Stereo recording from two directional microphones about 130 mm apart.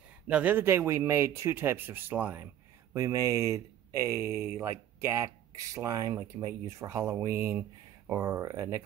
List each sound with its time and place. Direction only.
0.3 s speech: 10° right (ahead or behind)
2.9 s speech: 25° right (ahead or behind)